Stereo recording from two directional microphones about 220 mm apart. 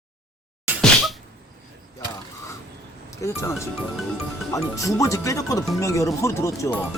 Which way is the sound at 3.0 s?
15° left (ahead or behind).